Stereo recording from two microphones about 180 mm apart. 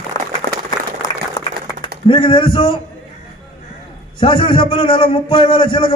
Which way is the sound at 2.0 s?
25° left (ahead or behind).